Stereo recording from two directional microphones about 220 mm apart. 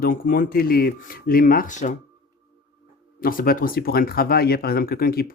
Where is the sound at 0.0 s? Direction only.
40° left (ahead or behind).